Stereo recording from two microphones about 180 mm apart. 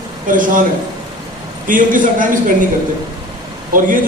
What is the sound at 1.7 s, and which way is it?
Speech, 45° right (ahead or behind).